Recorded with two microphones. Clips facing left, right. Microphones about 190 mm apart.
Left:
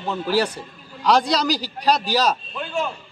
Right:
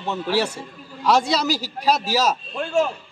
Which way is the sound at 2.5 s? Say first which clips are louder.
Right 5 dB; 45° right (ahead or behind).